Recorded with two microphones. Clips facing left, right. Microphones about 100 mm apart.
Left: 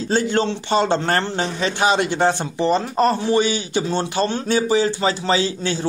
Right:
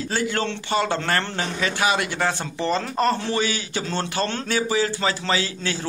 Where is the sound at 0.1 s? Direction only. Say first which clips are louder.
Left 7 dB; 25° left (ahead or behind).